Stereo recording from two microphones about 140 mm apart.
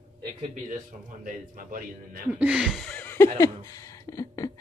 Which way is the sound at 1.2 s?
85° right.